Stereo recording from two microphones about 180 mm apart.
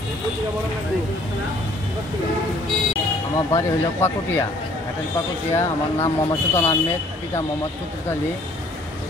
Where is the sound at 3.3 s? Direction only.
15° left (ahead or behind).